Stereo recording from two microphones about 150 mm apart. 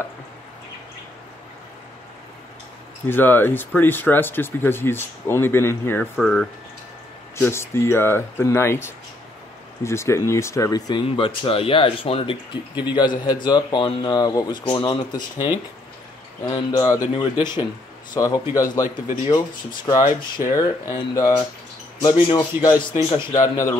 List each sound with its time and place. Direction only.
3.1 s speech: 15° left (ahead or behind)
6.1 s speech: centre (ahead or behind)
7.3 s speech: 15° left (ahead or behind)
11.1 s speech: 35° left (ahead or behind)
16.4 s speech: 25° left (ahead or behind)
20.1 s speech: 65° left (ahead or behind)
20.5 s speech: 25° left (ahead or behind)
23.3 s speech: 20° left (ahead or behind)